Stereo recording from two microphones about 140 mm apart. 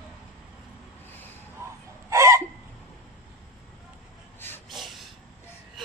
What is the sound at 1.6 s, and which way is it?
Chicken, 20° right (ahead or behind).